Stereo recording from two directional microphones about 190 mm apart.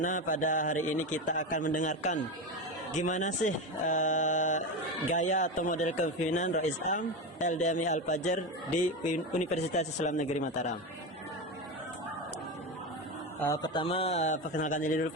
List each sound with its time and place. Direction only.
0.0 s a man's voice: 40° left (ahead or behind)
9.5 s a man's voice: 35° left (ahead or behind)
13.4 s a man's voice: 20° left (ahead or behind); by 15.0 s 45° left (ahead or behind)